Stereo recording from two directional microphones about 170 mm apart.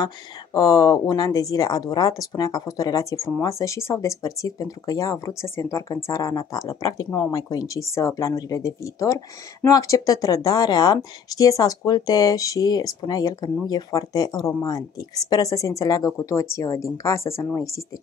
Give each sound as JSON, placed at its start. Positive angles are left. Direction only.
{"t": 0.0, "sound": "speech", "side_deg": 20}